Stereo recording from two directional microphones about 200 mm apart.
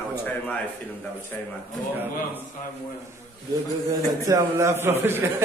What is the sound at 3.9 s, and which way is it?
A man's voice, 15° right (ahead or behind).